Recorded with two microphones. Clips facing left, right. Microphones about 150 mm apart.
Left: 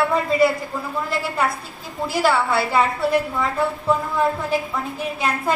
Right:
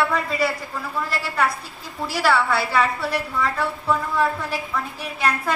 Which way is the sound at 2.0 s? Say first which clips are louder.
Left 1 dB; 25° left (ahead or behind).